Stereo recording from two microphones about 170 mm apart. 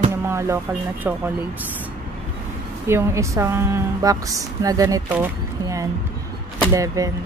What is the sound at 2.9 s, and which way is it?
A woman's voice, 15° right (ahead or behind).